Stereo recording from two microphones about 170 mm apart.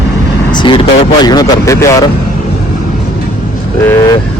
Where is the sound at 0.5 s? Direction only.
30° left (ahead or behind).